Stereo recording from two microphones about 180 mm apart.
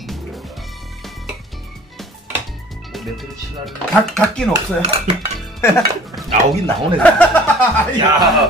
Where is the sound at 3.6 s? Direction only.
5° left (ahead or behind).